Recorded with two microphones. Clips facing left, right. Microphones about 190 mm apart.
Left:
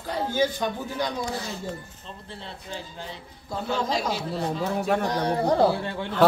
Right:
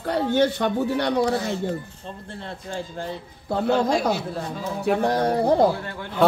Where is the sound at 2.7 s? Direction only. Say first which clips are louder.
Right 7 dB; 60° right (ahead or behind).